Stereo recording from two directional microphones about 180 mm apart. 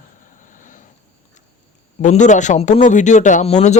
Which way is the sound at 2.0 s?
40° left (ahead or behind).